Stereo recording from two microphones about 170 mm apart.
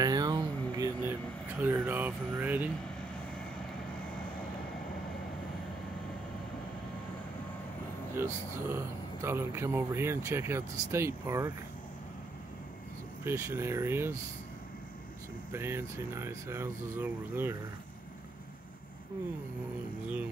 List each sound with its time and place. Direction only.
0.0 s a sound: 25° right (ahead or behind)
8.2 s speech: 15° right (ahead or behind)
13.2 s speech: 15° right (ahead or behind)
15.5 s speech: 15° right (ahead or behind)